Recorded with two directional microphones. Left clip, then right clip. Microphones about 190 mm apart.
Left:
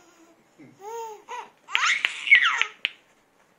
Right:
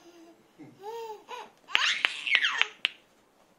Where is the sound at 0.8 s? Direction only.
5° right (ahead or behind).